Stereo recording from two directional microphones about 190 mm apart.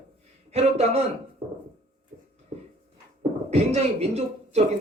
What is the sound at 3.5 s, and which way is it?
Speech, 35° right (ahead or behind).